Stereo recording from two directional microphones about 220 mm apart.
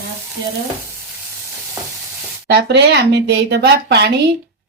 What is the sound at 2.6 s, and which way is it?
Speech, 50° right (ahead or behind).